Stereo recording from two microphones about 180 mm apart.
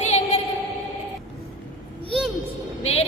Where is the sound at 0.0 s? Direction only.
40° left (ahead or behind).